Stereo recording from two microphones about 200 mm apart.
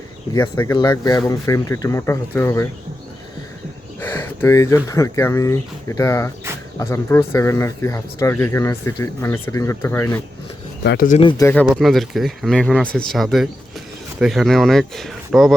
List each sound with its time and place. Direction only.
0.3 s speech: 10° left (ahead or behind)
4.0 s speech: 10° left (ahead or behind)
10.8 s speech: 45° left (ahead or behind)
11.2 s speech: 25° left (ahead or behind)
11.6 s speech: centre (ahead or behind)